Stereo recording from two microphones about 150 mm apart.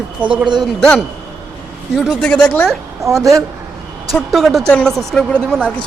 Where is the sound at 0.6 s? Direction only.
5° left (ahead or behind).